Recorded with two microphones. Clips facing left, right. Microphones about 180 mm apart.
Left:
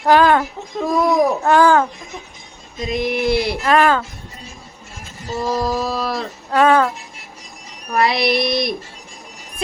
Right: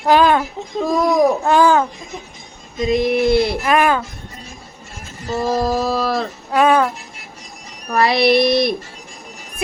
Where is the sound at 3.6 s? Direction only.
15° right (ahead or behind).